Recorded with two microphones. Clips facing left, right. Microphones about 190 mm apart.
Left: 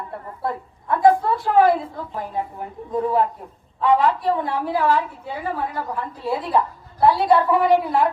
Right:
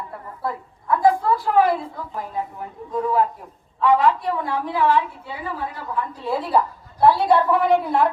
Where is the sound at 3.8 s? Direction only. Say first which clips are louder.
Even; 30° left (ahead or behind).